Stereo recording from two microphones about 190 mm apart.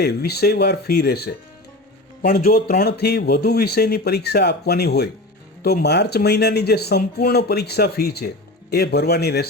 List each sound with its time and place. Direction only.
0.0 s speech: 55° left (ahead or behind)